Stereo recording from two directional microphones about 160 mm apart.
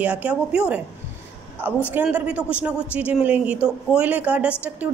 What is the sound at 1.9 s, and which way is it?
A woman's voice, 10° right (ahead or behind).